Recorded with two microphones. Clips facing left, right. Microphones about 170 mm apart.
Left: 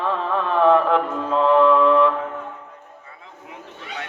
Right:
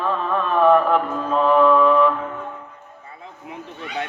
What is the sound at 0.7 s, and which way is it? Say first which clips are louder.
Mantra: right 1 dB; 25° left (ahead or behind).